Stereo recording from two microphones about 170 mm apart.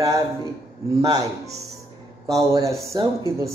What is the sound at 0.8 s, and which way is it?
A woman's voice, 20° right (ahead or behind).